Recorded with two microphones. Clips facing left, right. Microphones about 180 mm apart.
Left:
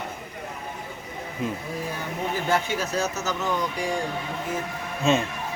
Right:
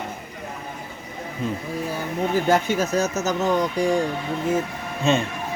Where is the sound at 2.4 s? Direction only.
45° right (ahead or behind).